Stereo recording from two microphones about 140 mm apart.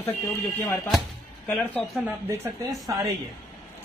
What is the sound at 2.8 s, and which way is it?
Speech, 25° right (ahead or behind).